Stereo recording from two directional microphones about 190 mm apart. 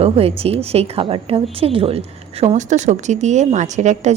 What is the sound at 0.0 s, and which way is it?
A woman's voice, 30° right (ahead or behind).